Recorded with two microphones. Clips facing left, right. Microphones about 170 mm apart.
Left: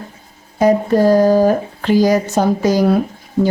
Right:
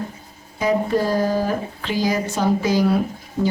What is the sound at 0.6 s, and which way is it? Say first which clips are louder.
A woman's voice: left 7 dB; 45° left (ahead or behind).